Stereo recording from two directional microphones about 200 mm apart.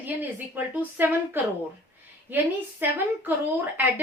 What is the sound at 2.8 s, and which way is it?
Speech, 10° right (ahead or behind).